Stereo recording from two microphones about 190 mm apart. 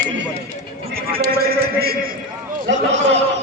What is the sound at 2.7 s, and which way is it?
Speech, 70° right (ahead or behind).